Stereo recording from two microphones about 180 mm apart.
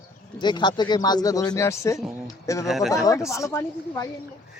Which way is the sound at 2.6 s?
Centre (ahead or behind).